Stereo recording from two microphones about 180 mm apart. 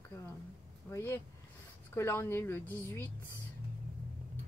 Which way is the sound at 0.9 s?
15° left (ahead or behind).